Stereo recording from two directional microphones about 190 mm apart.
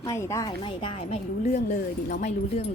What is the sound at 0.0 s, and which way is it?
A woman's voice, 15° left (ahead or behind).